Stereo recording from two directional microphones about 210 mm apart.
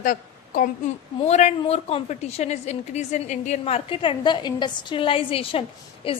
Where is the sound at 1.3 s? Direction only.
30° left (ahead or behind).